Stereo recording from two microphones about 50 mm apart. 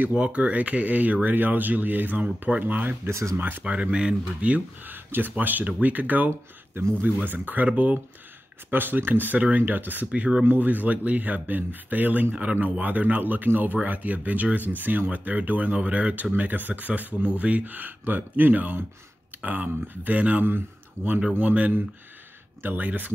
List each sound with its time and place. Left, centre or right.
0.1 s speech: right
3.1 s speech: right
3.3 s speech: right
3.6 s speech: right
4.8 s speech: right
8.6 s speech: right
20.4 s speech: right